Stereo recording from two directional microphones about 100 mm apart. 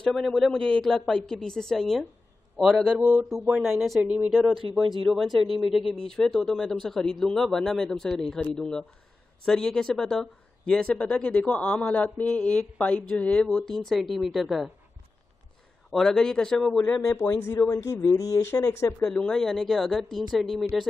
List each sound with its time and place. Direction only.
0.0 s speech: 5° left (ahead or behind)
3.0 s speech: 15° right (ahead or behind)
3.6 s speech: centre (ahead or behind)
4.0 s speech: 10° right (ahead or behind)
4.6 s speech: 55° right (ahead or behind)
5.0 s speech: centre (ahead or behind)
15.9 s speech: 5° left (ahead or behind)
17.3 s speech: 35° left (ahead or behind)
18.9 s speech: 10° left (ahead or behind)